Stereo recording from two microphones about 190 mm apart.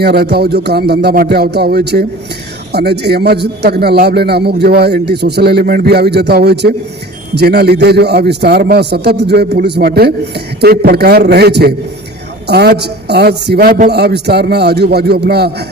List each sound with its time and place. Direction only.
0.0 s a man's voice: 60° right (ahead or behind)